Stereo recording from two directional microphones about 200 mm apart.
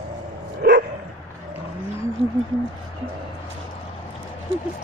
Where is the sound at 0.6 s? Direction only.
55° right (ahead or behind).